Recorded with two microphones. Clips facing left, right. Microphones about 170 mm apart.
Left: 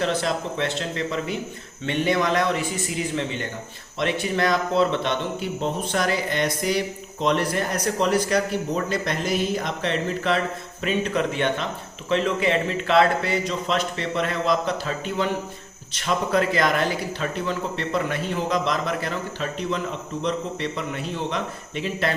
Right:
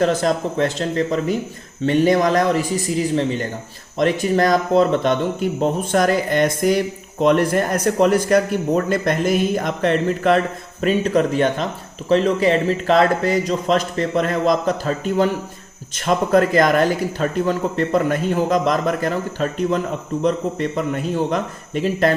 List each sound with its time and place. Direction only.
0.0 s a man's voice: 45° right (ahead or behind)